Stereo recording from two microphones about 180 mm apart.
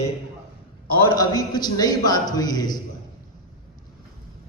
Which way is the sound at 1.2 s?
20° left (ahead or behind).